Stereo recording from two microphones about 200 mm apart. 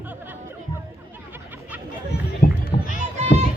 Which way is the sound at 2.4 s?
45° left (ahead or behind).